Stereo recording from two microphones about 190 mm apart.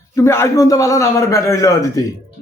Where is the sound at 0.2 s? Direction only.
15° left (ahead or behind).